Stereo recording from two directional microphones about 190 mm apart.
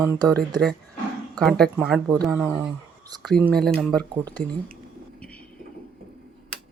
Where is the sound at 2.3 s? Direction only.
10° right (ahead or behind).